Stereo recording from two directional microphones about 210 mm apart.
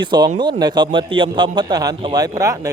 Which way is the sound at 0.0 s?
20° right (ahead or behind).